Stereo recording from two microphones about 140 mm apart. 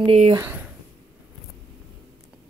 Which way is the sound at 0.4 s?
15° right (ahead or behind).